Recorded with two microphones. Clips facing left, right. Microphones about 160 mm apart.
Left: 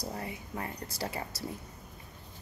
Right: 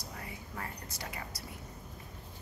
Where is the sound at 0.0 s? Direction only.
30° left (ahead or behind).